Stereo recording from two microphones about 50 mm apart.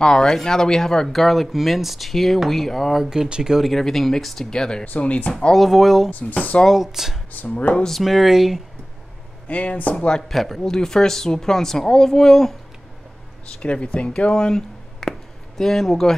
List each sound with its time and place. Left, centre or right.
0.0 s speech: centre
3.1 s speech: centre
3.7 s speech: centre
4.8 s speech: left
5.3 s speech: centre
5.6 s speech: centre
6.0 s speech: left
6.7 s speech: centre
7.3 s speech: left
7.9 s speech: centre
9.5 s speech: left
9.9 s speech: left
10.2 s speech: centre
13.5 s speech: left; by 16.2 s centre